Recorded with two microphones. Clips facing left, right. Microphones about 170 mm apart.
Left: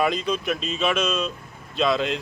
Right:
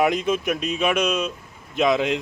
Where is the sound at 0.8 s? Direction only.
15° right (ahead or behind).